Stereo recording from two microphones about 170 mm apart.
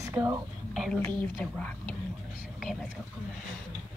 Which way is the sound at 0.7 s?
Centre (ahead or behind).